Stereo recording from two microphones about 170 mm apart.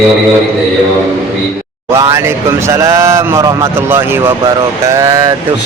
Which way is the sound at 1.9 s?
15° right (ahead or behind).